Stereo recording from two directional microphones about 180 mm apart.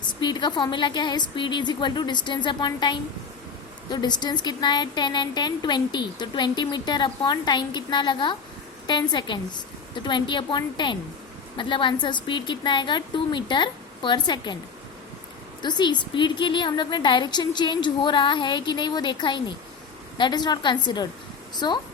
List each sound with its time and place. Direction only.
0.1 s a woman's voice: 25° left (ahead or behind)
15.6 s a woman's voice: 25° left (ahead or behind)